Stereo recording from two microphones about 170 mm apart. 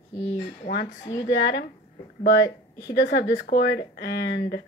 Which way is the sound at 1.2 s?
90° left.